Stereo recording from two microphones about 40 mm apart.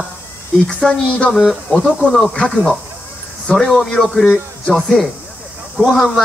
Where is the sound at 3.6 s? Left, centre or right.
Centre.